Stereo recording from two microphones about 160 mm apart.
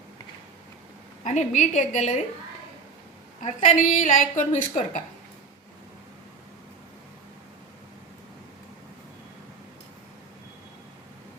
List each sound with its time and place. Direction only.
1.2 s a woman's voice: 50° left (ahead or behind)
3.4 s a woman's voice: 50° left (ahead or behind)